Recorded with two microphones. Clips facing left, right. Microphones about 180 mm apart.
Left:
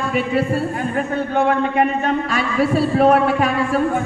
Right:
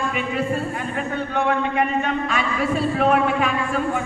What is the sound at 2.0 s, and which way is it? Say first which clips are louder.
A man's voice: left 3 dB; 35° left (ahead or behind).